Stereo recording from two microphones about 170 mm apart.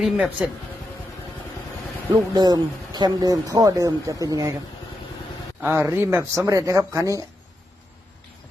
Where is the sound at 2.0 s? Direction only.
25° right (ahead or behind).